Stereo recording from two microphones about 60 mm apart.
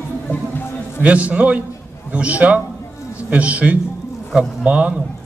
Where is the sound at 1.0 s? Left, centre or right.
Right.